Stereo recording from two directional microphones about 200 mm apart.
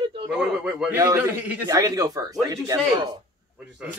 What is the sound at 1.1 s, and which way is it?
Chuckle, 10° right (ahead or behind).